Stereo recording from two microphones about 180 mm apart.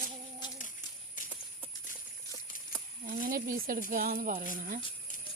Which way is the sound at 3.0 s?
50° right (ahead or behind).